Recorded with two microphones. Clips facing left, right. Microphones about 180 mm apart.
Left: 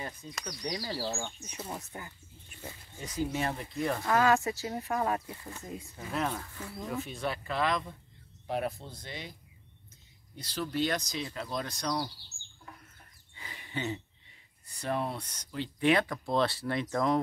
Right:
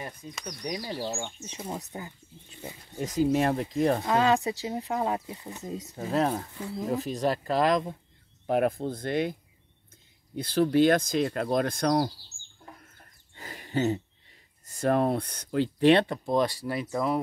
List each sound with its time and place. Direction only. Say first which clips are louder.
0.0 s speech: right 2 dB; 5° right (ahead or behind)
1.9 s wild animals: right 5 dB; 20° right (ahead or behind)
3.0 s speech: right 8 dB; 40° right (ahead or behind)
4.0 s speech: right 2 dB; 20° right (ahead or behind)
5.9 s speech: right 7 dB; 35° right (ahead or behind)
6.5 s speech: right 7 dB; 20° right (ahead or behind)
6.8 s speech: right 7 dB; 40° right (ahead or behind); by 9.3 s 55° right (ahead or behind)
10.3 s speech: right 11 dB; 55° right (ahead or behind)
13.3 s a sound: right 8 dB; 45° right (ahead or behind)
14.7 s speech: right 9 dB; 45° right (ahead or behind)
15.8 s speech: right 6 dB; 30° right (ahead or behind)
16.3 s speech: right 3 dB; 15° right (ahead or behind)